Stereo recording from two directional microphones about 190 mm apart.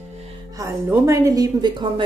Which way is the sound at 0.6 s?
15° right (ahead or behind).